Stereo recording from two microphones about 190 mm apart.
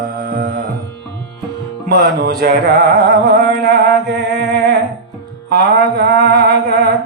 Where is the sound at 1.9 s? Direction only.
55° right (ahead or behind).